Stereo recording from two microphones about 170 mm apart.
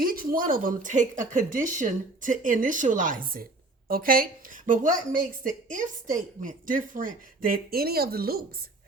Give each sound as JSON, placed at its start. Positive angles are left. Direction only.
{"t": 0.0, "sound": "a woman's voice", "side_deg": -60}